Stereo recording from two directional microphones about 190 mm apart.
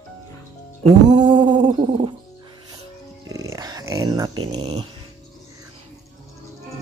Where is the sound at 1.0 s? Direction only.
25° right (ahead or behind).